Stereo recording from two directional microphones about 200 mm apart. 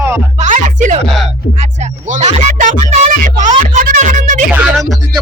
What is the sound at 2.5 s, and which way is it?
Music, 40° right (ahead or behind).